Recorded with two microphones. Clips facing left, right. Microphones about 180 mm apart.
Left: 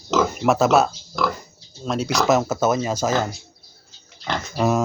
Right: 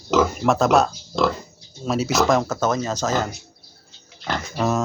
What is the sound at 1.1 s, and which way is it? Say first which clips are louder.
Speech: right 3 dB; 25° right (ahead or behind).